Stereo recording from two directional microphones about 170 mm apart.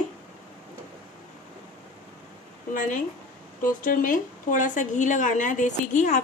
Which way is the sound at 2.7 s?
50° left (ahead or behind).